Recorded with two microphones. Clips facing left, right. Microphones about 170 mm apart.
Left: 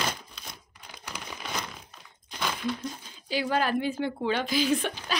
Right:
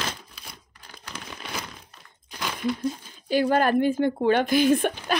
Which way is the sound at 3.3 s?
50° right (ahead or behind).